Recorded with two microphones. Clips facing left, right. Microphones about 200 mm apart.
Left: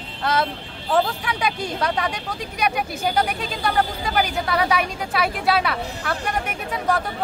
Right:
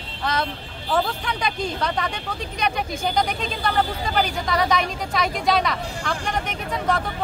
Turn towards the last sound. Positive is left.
turn(degrees=10)  # may be behind; listen again after turning